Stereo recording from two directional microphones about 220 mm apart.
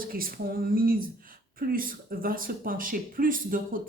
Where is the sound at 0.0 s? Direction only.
40° right (ahead or behind).